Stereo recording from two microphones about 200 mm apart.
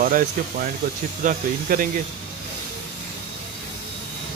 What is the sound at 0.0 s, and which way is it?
Speech, 45° right (ahead or behind).